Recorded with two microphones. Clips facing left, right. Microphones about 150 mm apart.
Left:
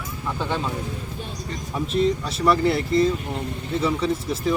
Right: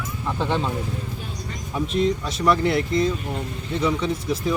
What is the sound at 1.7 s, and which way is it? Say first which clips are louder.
Speech: even; centre (ahead or behind).